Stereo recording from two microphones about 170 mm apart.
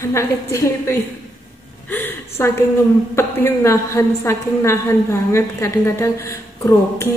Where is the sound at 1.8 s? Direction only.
10° left (ahead or behind).